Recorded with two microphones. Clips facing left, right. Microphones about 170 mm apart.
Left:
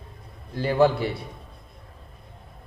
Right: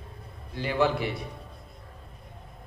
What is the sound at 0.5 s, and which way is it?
Speech, 40° left (ahead or behind).